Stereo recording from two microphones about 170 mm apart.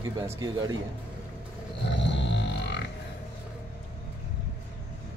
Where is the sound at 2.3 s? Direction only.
90° left.